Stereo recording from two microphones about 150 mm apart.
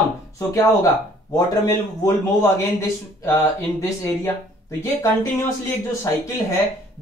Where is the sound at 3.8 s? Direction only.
20° left (ahead or behind).